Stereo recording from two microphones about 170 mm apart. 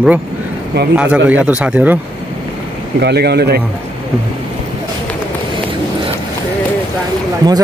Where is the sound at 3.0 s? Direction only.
75° right (ahead or behind).